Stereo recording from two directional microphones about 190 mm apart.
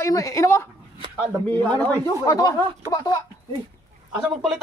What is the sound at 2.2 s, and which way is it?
Speech, 15° left (ahead or behind).